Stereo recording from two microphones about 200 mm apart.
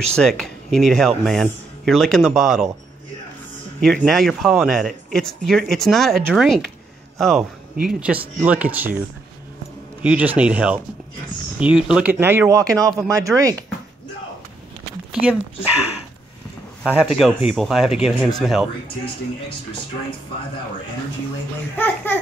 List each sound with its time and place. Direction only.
0.1 s speech: 5° left (ahead or behind)
3.8 s speech: centre (ahead or behind)
10.0 s speech: 10° right (ahead or behind)
15.1 s speech: 5° right (ahead or behind)
16.8 s speech: 5° right (ahead or behind)
21.7 s a child's voice: 10° left (ahead or behind)